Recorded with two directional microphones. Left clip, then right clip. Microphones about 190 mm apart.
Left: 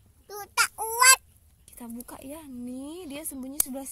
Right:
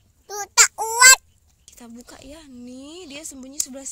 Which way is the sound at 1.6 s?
20° left (ahead or behind).